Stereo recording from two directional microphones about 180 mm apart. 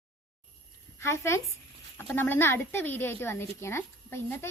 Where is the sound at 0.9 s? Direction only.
15° left (ahead or behind).